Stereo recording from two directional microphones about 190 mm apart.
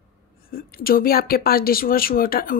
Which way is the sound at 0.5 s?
50° left (ahead or behind).